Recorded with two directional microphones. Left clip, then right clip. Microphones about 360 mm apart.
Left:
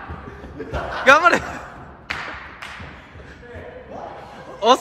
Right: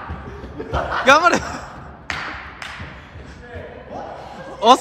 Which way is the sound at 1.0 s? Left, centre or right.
Centre.